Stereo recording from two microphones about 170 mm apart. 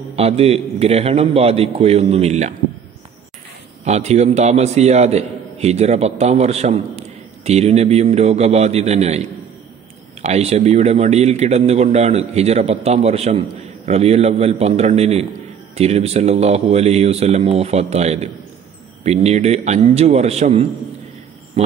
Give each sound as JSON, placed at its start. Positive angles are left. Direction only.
{"t": 0.1, "sound": "a man's voice", "side_deg": -35}
{"t": 3.8, "sound": "a man's voice", "side_deg": -40}
{"t": 10.2, "sound": "a man's voice", "side_deg": -40}
{"t": 21.6, "sound": "a sound", "side_deg": -40}